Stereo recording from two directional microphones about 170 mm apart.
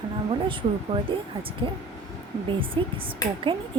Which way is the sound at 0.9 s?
30° right (ahead or behind).